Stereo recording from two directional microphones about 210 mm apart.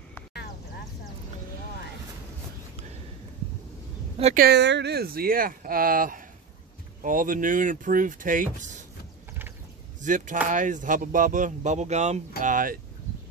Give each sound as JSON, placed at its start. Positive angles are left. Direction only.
{"t": 4.2, "sound": "speech", "side_deg": -35}
{"t": 4.5, "sound": "speech", "side_deg": -55}
{"t": 10.0, "sound": "speech", "side_deg": -40}